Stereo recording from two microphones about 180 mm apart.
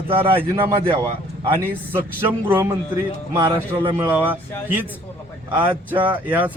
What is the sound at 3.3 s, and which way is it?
A man's voice, 15° right (ahead or behind).